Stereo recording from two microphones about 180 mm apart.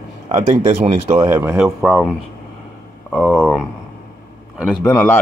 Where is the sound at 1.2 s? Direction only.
15° right (ahead or behind).